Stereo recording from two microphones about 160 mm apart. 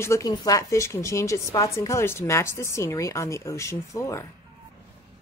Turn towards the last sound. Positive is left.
turn(degrees=20)  # may be behind; listen again after turning